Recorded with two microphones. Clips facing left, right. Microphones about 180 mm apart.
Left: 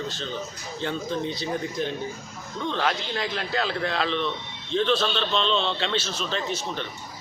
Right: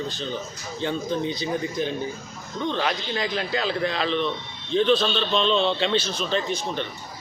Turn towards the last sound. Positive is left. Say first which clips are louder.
# right 2 dB
turn(degrees=0)  # may be behind; listen again after turning